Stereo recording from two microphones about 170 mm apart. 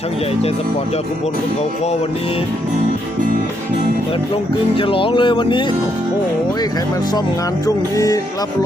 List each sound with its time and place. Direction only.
4.8 s speech: 30° left (ahead or behind)
7.9 s speech: 20° left (ahead or behind)